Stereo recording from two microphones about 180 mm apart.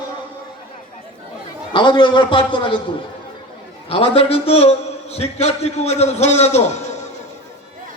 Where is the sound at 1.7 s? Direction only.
25° left (ahead or behind).